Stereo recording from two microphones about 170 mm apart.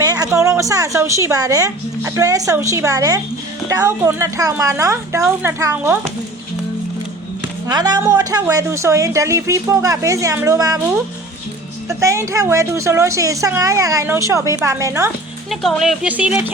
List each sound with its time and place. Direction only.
0.0 s a woman's voice: 20° right (ahead or behind)
7.7 s a woman's voice: 25° right (ahead or behind)
11.9 s a woman's voice: 15° right (ahead or behind)
15.4 s speech: centre (ahead or behind)